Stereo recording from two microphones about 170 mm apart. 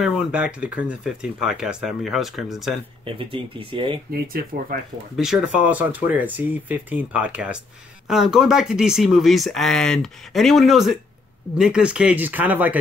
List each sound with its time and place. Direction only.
0.0 s speech: 5° right (ahead or behind)
3.2 s speech: 30° right (ahead or behind)
5.1 s speech: 5° right (ahead or behind)